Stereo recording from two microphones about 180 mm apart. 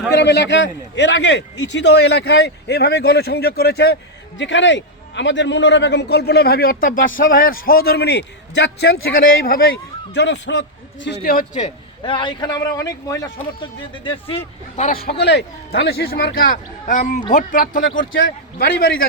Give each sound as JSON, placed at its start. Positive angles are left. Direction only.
{"t": 0.1, "sound": "a man's voice", "side_deg": 70}
{"t": 4.4, "sound": "a man's voice", "side_deg": 90}
{"t": 10.2, "sound": "a man's voice", "side_deg": 75}
{"t": 12.0, "sound": "speech", "side_deg": 25}
{"t": 15.2, "sound": "a man's voice", "side_deg": 70}
{"t": 18.1, "sound": "a man's voice", "side_deg": 90}